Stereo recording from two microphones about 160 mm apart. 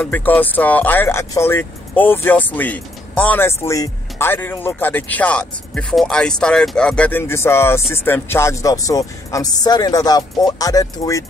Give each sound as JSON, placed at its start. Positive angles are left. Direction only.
{"t": 0.0, "sound": "speech", "side_deg": 10}